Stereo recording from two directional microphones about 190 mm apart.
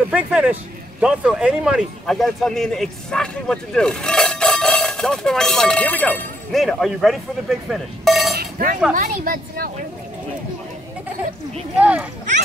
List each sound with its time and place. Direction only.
0.1 s speech: 5° right (ahead or behind)
8.4 s chink: 50° right (ahead or behind)
8.9 s a woman's voice: 45° right (ahead or behind)
11.7 s speech: 5° right (ahead or behind)